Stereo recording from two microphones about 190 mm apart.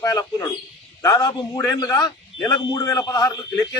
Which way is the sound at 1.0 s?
20° left (ahead or behind).